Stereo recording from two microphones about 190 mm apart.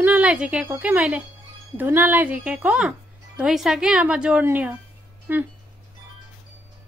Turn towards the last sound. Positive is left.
turn(degrees=-10)  # may be behind; listen again after turning